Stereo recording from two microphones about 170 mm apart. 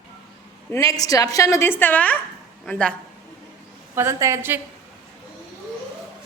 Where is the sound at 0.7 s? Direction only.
20° left (ahead or behind).